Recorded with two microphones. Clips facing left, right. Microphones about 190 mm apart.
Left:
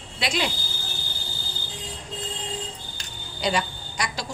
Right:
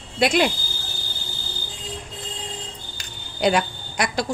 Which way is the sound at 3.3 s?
60° right (ahead or behind).